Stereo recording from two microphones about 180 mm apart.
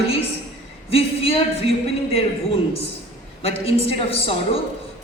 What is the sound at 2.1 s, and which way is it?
A man's voice, 35° left (ahead or behind).